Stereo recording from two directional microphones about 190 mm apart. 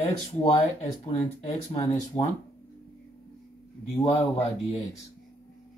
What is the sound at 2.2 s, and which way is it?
Speech, 25° left (ahead or behind).